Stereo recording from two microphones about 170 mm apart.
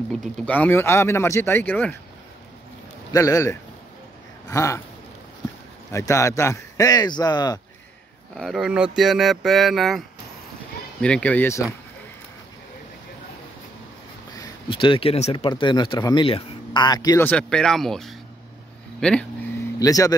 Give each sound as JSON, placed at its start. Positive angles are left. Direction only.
{"t": 0.1, "sound": "speech", "side_deg": 5}
{"t": 3.1, "sound": "speech", "side_deg": 20}
{"t": 5.9, "sound": "speech", "side_deg": 20}
{"t": 8.4, "sound": "speech", "side_deg": 0}
{"t": 14.3, "sound": "speech", "side_deg": 25}
{"t": 15.4, "sound": "speech", "side_deg": 25}
{"t": 17.2, "sound": "speech", "side_deg": 10}
{"t": 19.8, "sound": "speech", "side_deg": 20}